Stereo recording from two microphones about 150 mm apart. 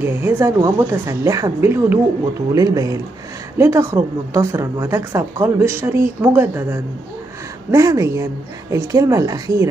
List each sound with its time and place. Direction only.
0.0 s a woman's voice: 15° right (ahead or behind)